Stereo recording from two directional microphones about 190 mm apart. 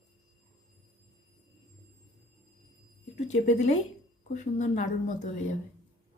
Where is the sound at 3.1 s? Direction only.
35° left (ahead or behind).